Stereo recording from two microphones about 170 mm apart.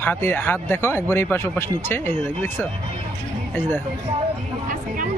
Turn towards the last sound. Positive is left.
turn(degrees=15)  # may be behind; listen again after turning